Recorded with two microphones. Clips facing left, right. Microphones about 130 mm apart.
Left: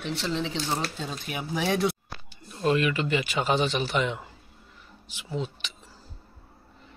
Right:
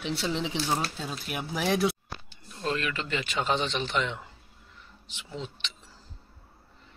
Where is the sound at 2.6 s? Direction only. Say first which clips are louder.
Left 7 dB; 10° left (ahead or behind).